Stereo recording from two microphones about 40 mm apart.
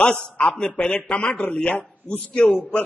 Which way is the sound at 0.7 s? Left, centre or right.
Left.